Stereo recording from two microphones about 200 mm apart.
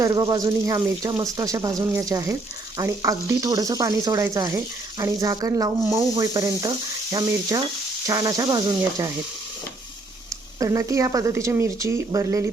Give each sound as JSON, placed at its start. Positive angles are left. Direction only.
{"t": 0.0, "sound": "speech", "side_deg": -20}
{"t": 10.6, "sound": "speech", "side_deg": -15}